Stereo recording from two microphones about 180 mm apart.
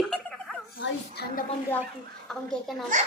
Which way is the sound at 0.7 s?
60° left (ahead or behind).